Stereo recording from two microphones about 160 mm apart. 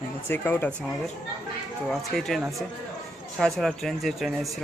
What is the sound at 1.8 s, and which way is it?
Speech, 5° left (ahead or behind).